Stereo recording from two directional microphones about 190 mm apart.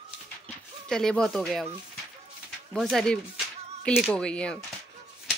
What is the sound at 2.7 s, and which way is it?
Speech, centre (ahead or behind).